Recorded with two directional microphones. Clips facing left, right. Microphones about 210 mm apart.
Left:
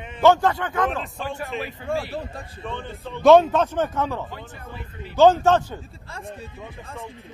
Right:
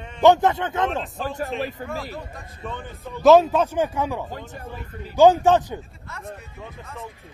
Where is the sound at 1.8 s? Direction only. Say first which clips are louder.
Left 4 dB; 40° right (ahead or behind).